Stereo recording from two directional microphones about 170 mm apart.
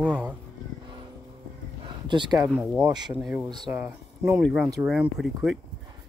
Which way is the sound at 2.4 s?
10° right (ahead or behind).